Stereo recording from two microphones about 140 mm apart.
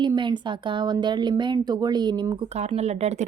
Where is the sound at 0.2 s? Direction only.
35° right (ahead or behind).